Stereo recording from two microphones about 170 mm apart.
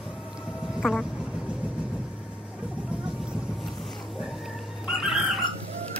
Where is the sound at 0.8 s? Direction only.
Centre (ahead or behind).